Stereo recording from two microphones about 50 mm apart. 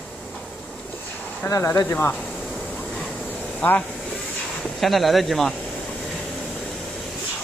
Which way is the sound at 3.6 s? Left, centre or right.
Left.